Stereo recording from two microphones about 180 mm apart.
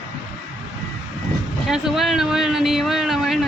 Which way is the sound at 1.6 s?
Centre (ahead or behind).